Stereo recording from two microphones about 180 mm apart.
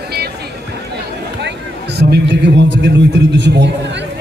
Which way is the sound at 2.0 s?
70° right (ahead or behind).